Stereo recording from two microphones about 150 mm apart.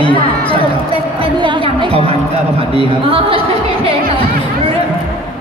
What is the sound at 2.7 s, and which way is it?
A woman's voice, 40° right (ahead or behind).